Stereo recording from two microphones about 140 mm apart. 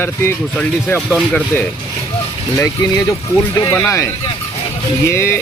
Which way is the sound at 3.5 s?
25° left (ahead or behind).